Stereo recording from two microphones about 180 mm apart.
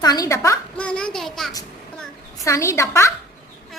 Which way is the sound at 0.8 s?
5° left (ahead or behind).